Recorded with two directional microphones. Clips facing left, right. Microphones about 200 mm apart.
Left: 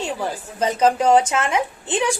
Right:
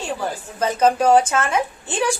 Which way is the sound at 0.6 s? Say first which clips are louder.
Even; 20° left (ahead or behind).